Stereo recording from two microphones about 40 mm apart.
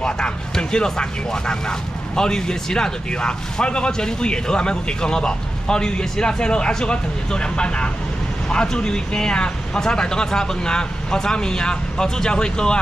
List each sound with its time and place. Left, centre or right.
0.0 s speech: left